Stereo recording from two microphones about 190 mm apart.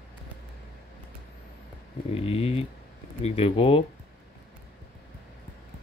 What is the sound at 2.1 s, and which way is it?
Speech, 30° left (ahead or behind).